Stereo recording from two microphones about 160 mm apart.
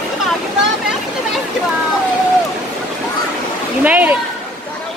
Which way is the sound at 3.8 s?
10° right (ahead or behind).